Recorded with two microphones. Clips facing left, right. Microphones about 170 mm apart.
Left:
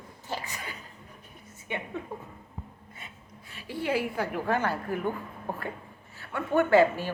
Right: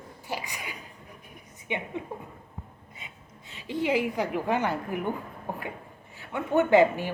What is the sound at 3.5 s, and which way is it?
A woman's voice, 20° right (ahead or behind).